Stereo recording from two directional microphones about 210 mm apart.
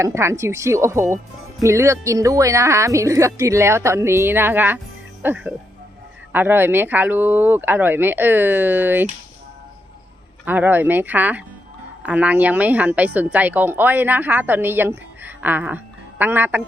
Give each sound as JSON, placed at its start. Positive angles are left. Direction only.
{"t": 0.0, "sound": "a woman's voice", "side_deg": -15}
{"t": 10.4, "sound": "a woman's voice", "side_deg": -10}